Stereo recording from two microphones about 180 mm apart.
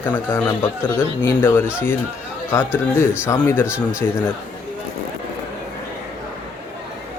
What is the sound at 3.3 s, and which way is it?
Speech, 15° left (ahead or behind).